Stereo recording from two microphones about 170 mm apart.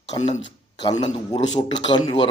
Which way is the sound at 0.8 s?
25° left (ahead or behind).